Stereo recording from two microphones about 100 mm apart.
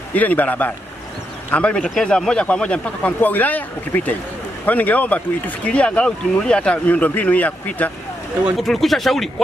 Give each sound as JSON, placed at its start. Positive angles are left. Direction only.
{"t": 0.1, "sound": "speech", "side_deg": 15}
{"t": 8.5, "sound": "speech", "side_deg": 0}